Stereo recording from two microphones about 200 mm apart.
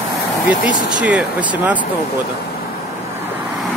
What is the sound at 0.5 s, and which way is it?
Speech, 5° right (ahead or behind).